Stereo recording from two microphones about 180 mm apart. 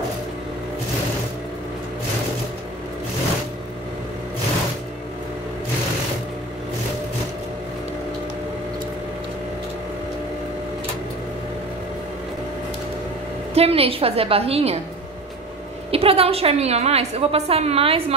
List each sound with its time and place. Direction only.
13.6 s a woman's voice: 35° right (ahead or behind)
15.9 s a woman's voice: 35° right (ahead or behind)